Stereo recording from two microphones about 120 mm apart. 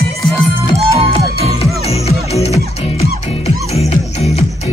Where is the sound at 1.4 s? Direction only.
60° left (ahead or behind).